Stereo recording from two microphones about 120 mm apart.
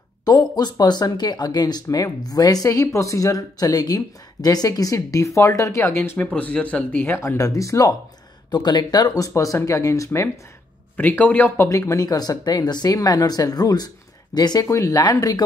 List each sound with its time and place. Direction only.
0.2 s speech: 35° left (ahead or behind)
6.1 s speech: 10° left (ahead or behind)
11.0 s speech: 15° left (ahead or behind); by 15.4 s 35° left (ahead or behind)